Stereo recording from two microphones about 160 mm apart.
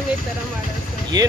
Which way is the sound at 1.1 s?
25° right (ahead or behind).